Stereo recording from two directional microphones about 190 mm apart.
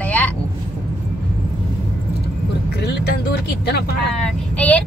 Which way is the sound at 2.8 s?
60° left (ahead or behind).